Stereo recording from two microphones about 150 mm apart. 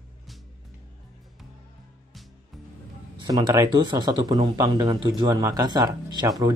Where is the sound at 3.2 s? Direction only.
25° right (ahead or behind).